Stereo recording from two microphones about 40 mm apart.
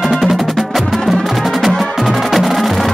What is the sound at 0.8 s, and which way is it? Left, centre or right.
Music, centre.